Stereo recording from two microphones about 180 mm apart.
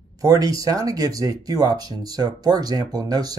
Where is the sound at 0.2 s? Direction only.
20° right (ahead or behind).